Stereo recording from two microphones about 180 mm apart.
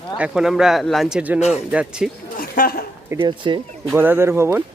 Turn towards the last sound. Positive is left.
turn(degrees=-15)  # may be behind; listen again after turning